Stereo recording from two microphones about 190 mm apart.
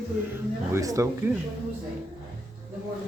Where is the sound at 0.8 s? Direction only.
15° right (ahead or behind).